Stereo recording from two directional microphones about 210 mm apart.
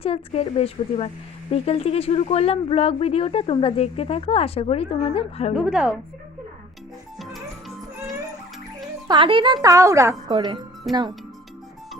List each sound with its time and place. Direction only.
0.0 s speech: 30° left (ahead or behind)
5.5 s a woman's voice: 5° right (ahead or behind)
9.0 s a woman's voice: 25° right (ahead or behind)
10.3 s speech: 25° right (ahead or behind)